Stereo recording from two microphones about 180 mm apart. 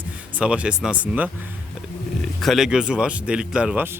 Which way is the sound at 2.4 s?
Centre (ahead or behind).